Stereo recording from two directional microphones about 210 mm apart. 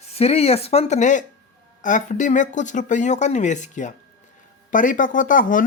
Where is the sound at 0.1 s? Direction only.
30° left (ahead or behind).